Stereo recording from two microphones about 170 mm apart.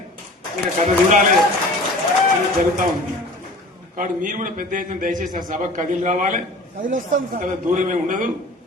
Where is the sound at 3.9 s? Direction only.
50° right (ahead or behind).